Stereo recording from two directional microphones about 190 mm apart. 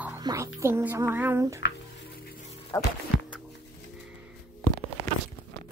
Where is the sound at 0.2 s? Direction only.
20° right (ahead or behind).